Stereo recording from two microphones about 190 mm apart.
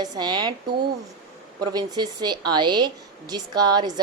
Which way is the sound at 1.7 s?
20° right (ahead or behind).